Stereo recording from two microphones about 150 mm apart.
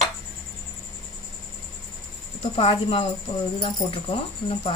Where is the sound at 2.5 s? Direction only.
40° left (ahead or behind).